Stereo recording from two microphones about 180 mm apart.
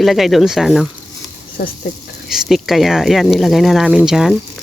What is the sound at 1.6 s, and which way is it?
Speech, 65° left (ahead or behind).